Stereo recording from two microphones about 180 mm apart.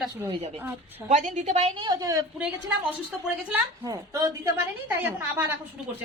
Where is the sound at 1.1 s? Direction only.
45° right (ahead or behind); by 2.3 s 20° right (ahead or behind).